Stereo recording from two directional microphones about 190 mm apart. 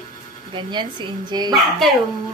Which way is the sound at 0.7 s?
25° right (ahead or behind).